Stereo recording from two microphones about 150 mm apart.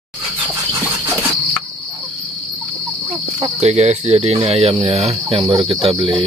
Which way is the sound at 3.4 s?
45° right (ahead or behind).